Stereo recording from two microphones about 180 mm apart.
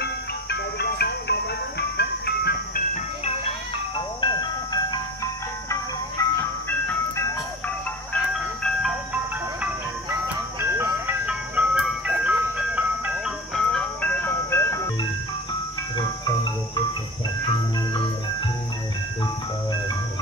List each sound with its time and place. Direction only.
0.0 s music: 65° left (ahead or behind)
3.9 s music: 25° left (ahead or behind)
8.1 s music: centre (ahead or behind)
13.7 s ice cream truck: 5° left (ahead or behind)